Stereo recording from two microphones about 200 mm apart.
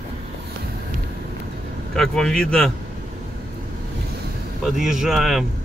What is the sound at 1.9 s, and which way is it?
Speech, 5° left (ahead or behind).